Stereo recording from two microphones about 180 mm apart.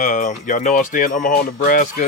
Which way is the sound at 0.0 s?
45° left (ahead or behind).